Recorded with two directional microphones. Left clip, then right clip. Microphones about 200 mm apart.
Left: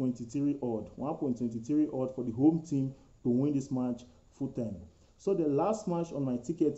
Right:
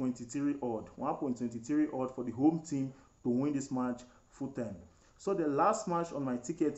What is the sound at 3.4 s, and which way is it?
Speech, 5° right (ahead or behind).